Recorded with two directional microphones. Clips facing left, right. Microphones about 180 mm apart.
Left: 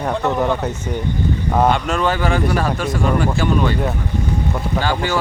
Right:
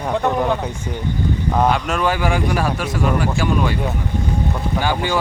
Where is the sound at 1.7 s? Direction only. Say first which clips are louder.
Left 1 dB; 5° right (ahead or behind).